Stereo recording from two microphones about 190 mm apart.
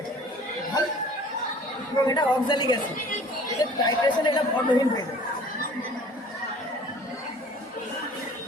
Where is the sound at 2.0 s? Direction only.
25° left (ahead or behind).